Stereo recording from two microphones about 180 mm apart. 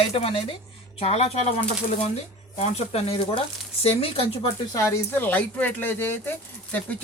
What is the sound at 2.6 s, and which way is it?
Speech, 35° left (ahead or behind).